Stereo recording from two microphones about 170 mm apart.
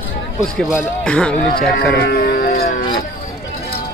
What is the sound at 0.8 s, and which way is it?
Speech, 5° left (ahead or behind).